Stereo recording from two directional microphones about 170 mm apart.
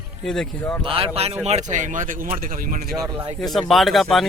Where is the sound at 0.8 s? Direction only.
35° right (ahead or behind); by 2.8 s 50° right (ahead or behind).